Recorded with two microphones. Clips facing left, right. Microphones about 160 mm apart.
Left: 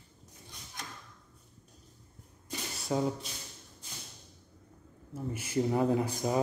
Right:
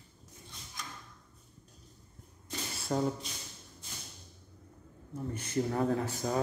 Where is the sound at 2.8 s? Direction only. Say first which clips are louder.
Left 1 dB; centre (ahead or behind).